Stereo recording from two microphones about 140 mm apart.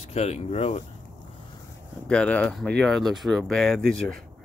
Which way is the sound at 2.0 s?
10° left (ahead or behind).